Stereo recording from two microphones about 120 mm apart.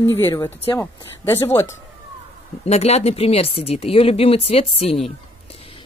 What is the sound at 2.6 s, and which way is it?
Speech, 60° left (ahead or behind).